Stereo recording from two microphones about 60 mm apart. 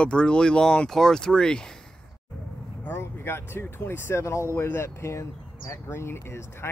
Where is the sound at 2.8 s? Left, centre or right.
Left.